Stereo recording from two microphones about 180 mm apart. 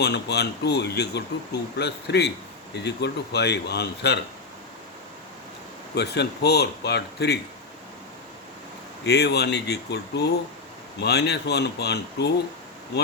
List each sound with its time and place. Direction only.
0.0 s speech: 65° left (ahead or behind)
5.9 s speech: 65° left (ahead or behind)
9.0 s speech: 65° left (ahead or behind)